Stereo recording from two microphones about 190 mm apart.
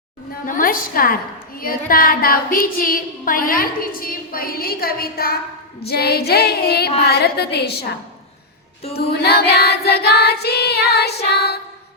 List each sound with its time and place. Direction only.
0.4 s a woman's voice: 45° left (ahead or behind)
5.8 s child singing: 55° left (ahead or behind)
9.1 s child singing: 60° left (ahead or behind)